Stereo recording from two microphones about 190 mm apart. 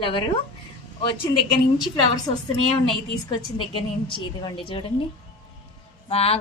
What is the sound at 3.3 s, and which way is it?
A woman's voice, 25° left (ahead or behind).